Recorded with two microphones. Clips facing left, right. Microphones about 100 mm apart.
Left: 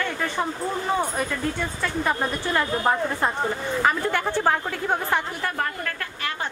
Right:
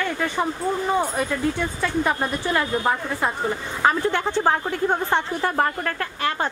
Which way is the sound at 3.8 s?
20° right (ahead or behind).